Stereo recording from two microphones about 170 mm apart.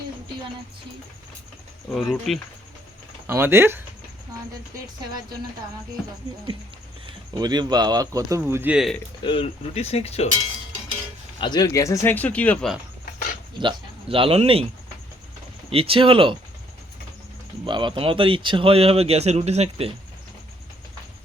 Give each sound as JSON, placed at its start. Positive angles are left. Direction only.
{"t": 1.9, "sound": "speech", "side_deg": 0}
{"t": 3.2, "sound": "speech", "side_deg": -15}
{"t": 7.3, "sound": "speech", "side_deg": -25}
{"t": 8.7, "sound": "speech", "side_deg": 0}
{"t": 9.2, "sound": "speech", "side_deg": 35}
{"t": 11.3, "sound": "speech", "side_deg": 25}
{"t": 13.6, "sound": "speech", "side_deg": -30}
{"t": 15.7, "sound": "speech", "side_deg": -35}
{"t": 17.7, "sound": "speech", "side_deg": -30}